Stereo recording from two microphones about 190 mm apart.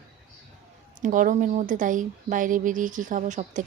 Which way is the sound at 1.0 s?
45° right (ahead or behind).